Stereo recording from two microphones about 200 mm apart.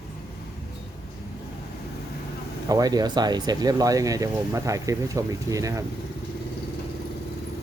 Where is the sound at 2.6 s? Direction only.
20° right (ahead or behind).